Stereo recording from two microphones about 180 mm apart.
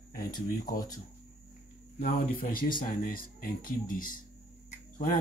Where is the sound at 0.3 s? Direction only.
50° left (ahead or behind).